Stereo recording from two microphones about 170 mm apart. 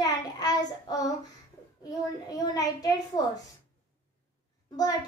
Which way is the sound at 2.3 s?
20° left (ahead or behind).